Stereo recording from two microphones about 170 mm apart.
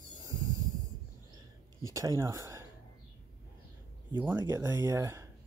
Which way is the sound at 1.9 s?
20° right (ahead or behind).